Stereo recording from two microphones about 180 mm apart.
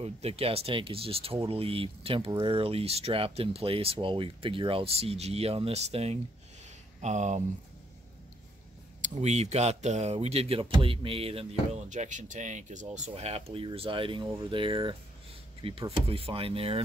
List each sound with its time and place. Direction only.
0.0 s speech: 35° right (ahead or behind)
9.0 s speech: 40° right (ahead or behind)
11.9 s speech: 45° right (ahead or behind)